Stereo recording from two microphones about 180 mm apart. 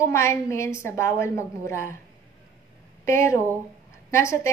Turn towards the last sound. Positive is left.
turn(degrees=15)  # may be behind; listen again after turning